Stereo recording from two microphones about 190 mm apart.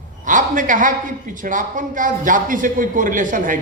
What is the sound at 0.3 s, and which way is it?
A man's voice, 40° right (ahead or behind).